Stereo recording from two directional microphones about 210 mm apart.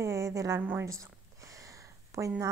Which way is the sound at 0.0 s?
15° right (ahead or behind).